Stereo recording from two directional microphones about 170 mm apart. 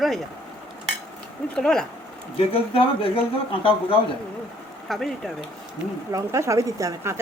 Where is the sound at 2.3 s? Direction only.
35° left (ahead or behind).